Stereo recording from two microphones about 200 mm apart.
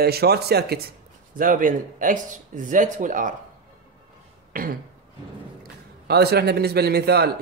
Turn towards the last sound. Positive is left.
turn(degrees=-55)  # may be behind; listen again after turning